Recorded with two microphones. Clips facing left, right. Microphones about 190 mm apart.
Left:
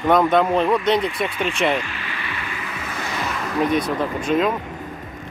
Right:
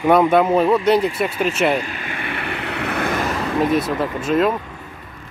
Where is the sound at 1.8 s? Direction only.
45° right (ahead or behind).